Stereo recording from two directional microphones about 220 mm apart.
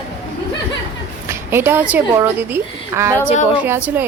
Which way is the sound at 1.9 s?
10° right (ahead or behind).